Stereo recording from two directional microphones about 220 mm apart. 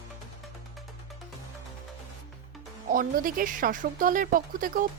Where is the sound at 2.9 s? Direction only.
40° right (ahead or behind).